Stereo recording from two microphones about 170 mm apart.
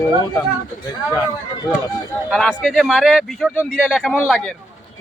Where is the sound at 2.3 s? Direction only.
Centre (ahead or behind).